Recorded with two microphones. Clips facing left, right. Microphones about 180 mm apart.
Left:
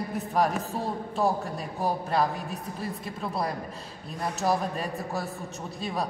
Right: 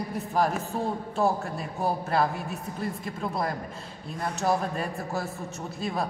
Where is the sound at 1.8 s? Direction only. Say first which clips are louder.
Even; centre (ahead or behind).